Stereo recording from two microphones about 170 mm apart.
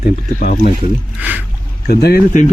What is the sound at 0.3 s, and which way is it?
Speech, 55° left (ahead or behind).